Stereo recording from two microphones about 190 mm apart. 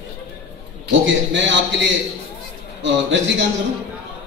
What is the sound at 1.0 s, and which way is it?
Speech, 70° right (ahead or behind).